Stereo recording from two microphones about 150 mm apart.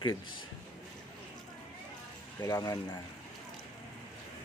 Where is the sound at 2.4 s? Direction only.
25° left (ahead or behind).